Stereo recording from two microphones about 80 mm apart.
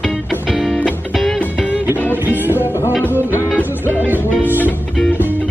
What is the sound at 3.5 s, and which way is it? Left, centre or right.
Music, left.